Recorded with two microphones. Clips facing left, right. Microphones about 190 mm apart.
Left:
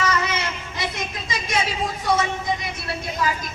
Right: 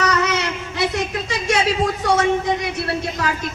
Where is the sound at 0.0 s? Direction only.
70° right (ahead or behind).